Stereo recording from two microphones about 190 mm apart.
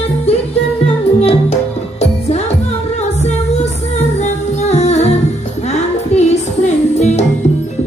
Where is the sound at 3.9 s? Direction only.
35° left (ahead or behind).